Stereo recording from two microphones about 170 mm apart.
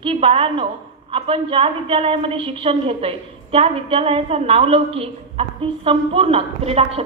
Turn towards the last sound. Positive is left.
turn(degrees=-35)  # may be behind; listen again after turning